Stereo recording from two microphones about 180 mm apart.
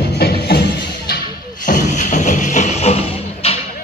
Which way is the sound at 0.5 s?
60° left (ahead or behind).